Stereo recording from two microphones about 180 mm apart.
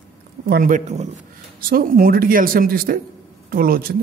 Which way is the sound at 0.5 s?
50° right (ahead or behind).